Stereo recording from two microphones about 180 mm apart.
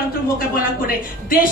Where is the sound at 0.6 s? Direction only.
50° left (ahead or behind).